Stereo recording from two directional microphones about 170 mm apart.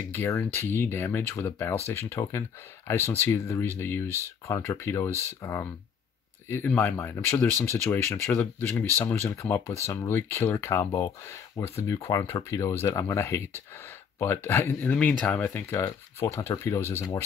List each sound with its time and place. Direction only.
0.1 s speech: 15° left (ahead or behind)